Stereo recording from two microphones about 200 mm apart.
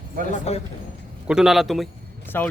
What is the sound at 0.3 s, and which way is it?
Speech, 30° left (ahead or behind).